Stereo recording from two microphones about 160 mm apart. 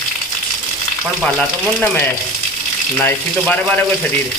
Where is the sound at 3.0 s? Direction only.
10° left (ahead or behind).